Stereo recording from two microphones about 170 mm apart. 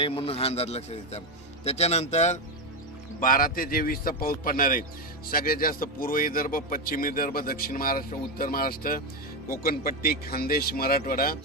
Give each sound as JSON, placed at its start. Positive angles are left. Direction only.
{"t": 0.0, "sound": "a man's voice", "side_deg": 35}
{"t": 3.2, "sound": "a man's voice", "side_deg": 55}